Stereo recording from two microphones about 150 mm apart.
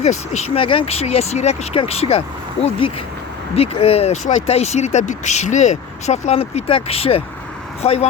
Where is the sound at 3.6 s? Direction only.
40° left (ahead or behind).